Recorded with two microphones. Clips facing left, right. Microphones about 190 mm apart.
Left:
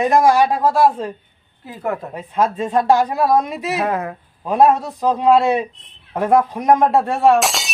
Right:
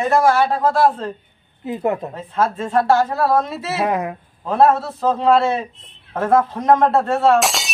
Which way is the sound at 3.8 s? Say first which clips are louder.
Right 4 dB; 15° right (ahead or behind).